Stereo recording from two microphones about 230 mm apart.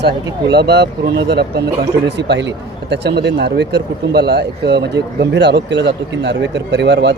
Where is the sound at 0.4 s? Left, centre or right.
Right.